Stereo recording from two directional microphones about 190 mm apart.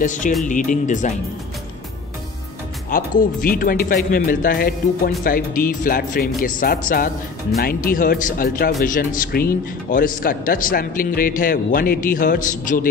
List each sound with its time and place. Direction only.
0.0 s speech: 40° left (ahead or behind)
2.9 s speech: 45° left (ahead or behind)